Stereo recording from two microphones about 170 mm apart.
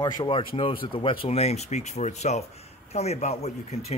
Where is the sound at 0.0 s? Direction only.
30° left (ahead or behind).